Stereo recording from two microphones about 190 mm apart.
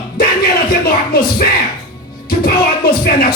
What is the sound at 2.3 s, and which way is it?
Speech, 50° left (ahead or behind).